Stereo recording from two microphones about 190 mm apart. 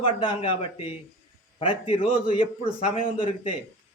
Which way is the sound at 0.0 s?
25° left (ahead or behind).